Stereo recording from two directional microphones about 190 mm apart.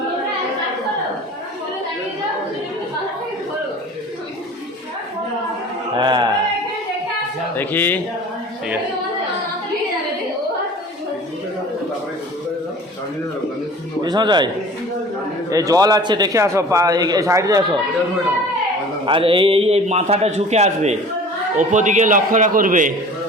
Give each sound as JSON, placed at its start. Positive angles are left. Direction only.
{"t": 6.0, "sound": "opera", "side_deg": -25}
{"t": 7.5, "sound": "speech", "side_deg": 10}
{"t": 14.0, "sound": "a man's voice", "side_deg": -25}
{"t": 19.0, "sound": "speech", "side_deg": -25}